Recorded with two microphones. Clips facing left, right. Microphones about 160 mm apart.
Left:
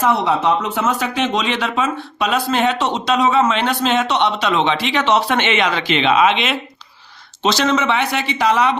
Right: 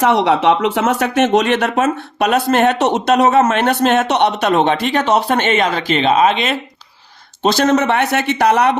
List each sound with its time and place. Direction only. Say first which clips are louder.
0.0 s speech: right 4 dB; 80° right; by 3.4 s 60° right (ahead or behind)
3.4 s a man's voice: right 4 dB; 50° right (ahead or behind)